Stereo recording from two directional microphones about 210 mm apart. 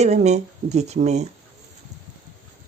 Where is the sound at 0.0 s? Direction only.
30° right (ahead or behind).